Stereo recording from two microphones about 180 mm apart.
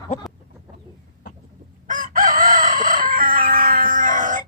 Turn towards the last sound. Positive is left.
turn(degrees=-45)  # may be behind; listen again after turning